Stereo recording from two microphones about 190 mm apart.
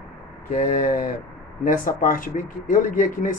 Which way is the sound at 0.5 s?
45° left (ahead or behind).